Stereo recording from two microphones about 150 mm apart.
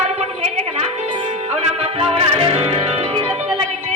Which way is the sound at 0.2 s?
45° right (ahead or behind).